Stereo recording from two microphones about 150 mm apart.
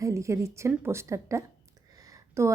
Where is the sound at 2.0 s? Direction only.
20° right (ahead or behind).